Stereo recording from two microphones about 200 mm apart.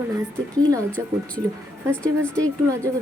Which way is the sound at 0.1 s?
15° right (ahead or behind).